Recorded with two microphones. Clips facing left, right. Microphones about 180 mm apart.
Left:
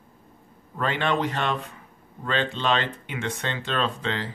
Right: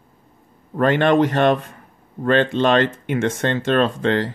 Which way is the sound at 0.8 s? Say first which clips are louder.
Right 10 dB; 55° right (ahead or behind).